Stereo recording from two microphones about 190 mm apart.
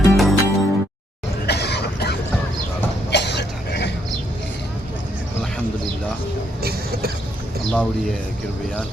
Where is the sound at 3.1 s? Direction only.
65° left (ahead or behind).